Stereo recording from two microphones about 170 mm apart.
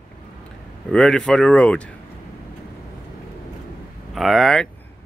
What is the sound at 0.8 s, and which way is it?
Speech, 5° left (ahead or behind).